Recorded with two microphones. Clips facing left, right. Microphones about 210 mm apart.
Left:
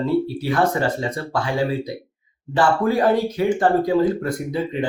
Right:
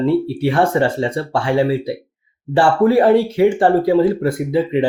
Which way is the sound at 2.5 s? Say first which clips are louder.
Right 6 dB; 30° right (ahead or behind).